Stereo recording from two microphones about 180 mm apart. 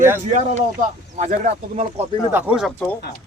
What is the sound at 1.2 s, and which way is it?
Speech, 45° right (ahead or behind).